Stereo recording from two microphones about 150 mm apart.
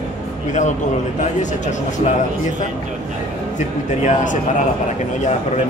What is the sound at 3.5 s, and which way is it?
Speech, 55° left (ahead or behind).